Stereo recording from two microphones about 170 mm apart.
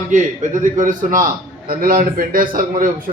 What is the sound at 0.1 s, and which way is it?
A man's voice, 45° right (ahead or behind).